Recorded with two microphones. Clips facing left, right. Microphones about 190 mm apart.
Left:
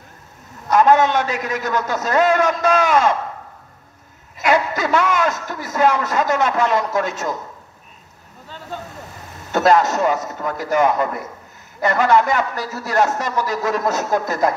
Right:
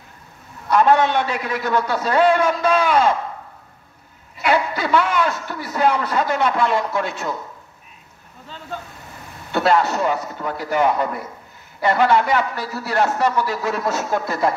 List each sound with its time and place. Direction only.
0.7 s a man's voice: 40° left (ahead or behind)
4.4 s a man's voice: 45° left (ahead or behind)
9.5 s a man's voice: 40° left (ahead or behind)